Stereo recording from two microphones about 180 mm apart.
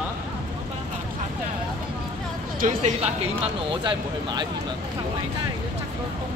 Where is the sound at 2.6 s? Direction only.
50° right (ahead or behind).